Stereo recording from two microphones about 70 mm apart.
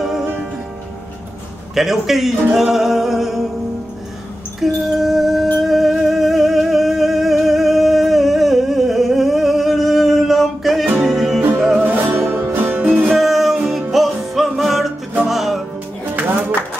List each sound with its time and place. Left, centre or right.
1.8 s music: centre
4.6 s music: centre
11.8 s music: right
13.2 s music: centre